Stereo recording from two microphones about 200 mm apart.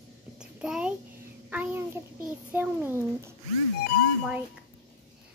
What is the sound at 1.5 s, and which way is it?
A child's voice, 10° right (ahead or behind).